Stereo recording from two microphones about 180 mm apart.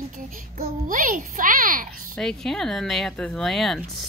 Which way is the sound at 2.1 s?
5° left (ahead or behind).